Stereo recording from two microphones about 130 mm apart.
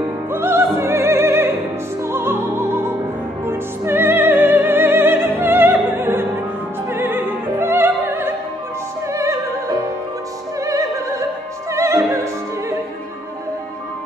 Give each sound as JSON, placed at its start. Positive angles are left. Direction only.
{"t": 0.3, "sound": "music", "side_deg": -20}